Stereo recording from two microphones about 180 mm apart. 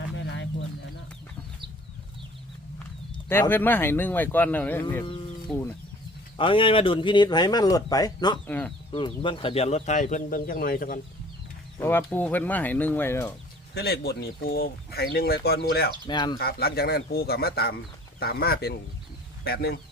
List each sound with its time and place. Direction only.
0.2 s bird: 75° left (ahead or behind)
3.5 s speech: 10° left (ahead or behind)
6.3 s speech: 30° left (ahead or behind)
8.4 s speech: 10° left (ahead or behind)
8.9 s speech: 30° left (ahead or behind); by 11.0 s 50° left (ahead or behind)
11.8 s speech: 10° left (ahead or behind)
13.7 s speech: 60° left (ahead or behind)
16.0 s speech: 25° left (ahead or behind)
16.4 s speech: 55° left (ahead or behind)